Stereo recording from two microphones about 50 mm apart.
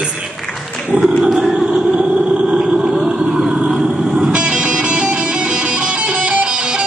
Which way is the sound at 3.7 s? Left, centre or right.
Centre.